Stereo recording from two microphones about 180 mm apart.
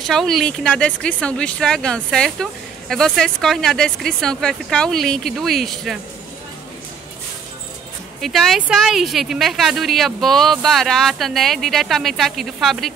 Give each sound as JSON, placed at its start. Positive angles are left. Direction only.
{"t": 0.0, "sound": "speech", "side_deg": 0}
{"t": 8.2, "sound": "speech", "side_deg": 0}